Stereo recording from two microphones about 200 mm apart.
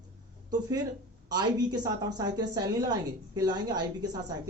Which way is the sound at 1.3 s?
20° right (ahead or behind).